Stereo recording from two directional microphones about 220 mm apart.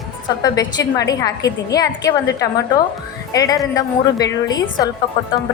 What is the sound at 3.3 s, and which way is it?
A woman's voice, 15° left (ahead or behind).